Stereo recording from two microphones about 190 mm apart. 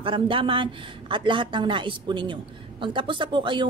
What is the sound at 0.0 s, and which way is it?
Speech, 25° right (ahead or behind).